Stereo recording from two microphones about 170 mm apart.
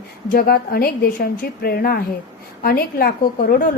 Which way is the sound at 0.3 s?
60° left (ahead or behind).